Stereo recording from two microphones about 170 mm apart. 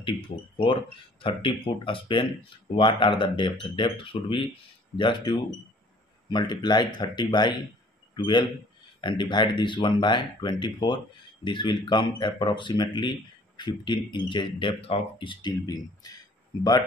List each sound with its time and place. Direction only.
1.2 s a man's voice: 30° left (ahead or behind)